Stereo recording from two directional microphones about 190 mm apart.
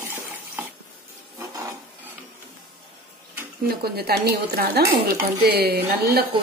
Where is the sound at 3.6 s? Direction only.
55° right (ahead or behind).